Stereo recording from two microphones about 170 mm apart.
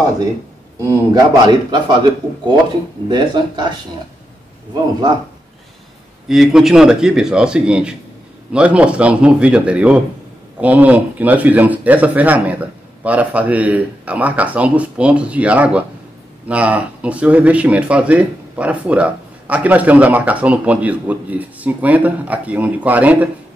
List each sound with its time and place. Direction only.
0.8 s a man's voice: 20° right (ahead or behind)
3.1 s a man's voice: 25° right (ahead or behind)
6.2 s a man's voice: centre (ahead or behind)